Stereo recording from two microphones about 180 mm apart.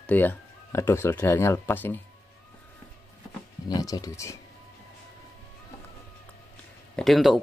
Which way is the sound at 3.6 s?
20° left (ahead or behind).